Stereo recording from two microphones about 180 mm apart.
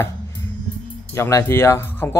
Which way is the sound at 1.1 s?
15° left (ahead or behind).